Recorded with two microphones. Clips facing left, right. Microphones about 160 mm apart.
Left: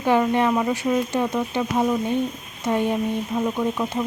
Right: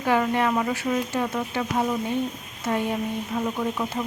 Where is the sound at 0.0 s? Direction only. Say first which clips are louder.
Left 3 dB; 20° left (ahead or behind).